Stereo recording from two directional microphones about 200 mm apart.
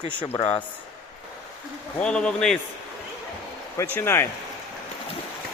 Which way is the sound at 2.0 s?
5° left (ahead or behind).